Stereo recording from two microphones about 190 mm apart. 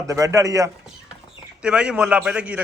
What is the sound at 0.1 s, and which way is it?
Speech, 15° right (ahead or behind).